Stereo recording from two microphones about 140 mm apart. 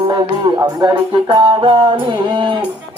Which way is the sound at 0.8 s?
30° right (ahead or behind).